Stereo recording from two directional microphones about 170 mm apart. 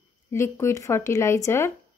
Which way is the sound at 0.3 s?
15° left (ahead or behind).